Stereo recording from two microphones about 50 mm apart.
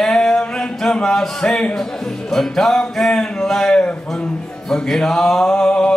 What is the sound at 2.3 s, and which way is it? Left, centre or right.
Music, centre.